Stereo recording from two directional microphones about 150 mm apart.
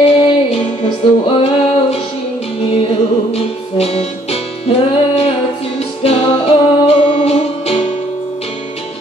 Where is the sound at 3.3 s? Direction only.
40° left (ahead or behind).